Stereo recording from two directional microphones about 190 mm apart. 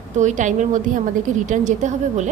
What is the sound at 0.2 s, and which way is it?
A woman's voice, 40° right (ahead or behind).